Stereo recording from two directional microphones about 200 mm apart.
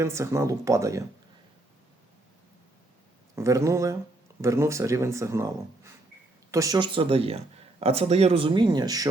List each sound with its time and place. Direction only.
0.0 s speech: 15° right (ahead or behind)
3.3 s speech: 15° right (ahead or behind)